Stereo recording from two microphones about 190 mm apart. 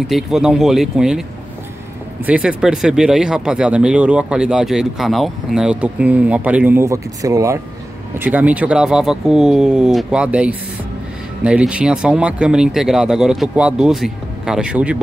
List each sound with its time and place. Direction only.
0.1 s speech: 5° right (ahead or behind)
2.2 s speech: 5° right (ahead or behind)